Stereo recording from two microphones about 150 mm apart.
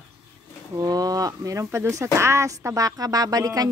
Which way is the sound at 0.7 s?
25° right (ahead or behind).